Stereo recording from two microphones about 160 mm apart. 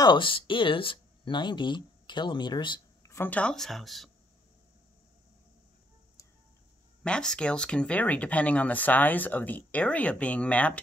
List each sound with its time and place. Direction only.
0.0 s speech: 30° left (ahead or behind)
3.1 s speech: 15° left (ahead or behind)
7.0 s speech: 5° left (ahead or behind)